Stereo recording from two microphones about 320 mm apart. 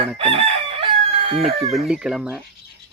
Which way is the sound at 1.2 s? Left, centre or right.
Centre.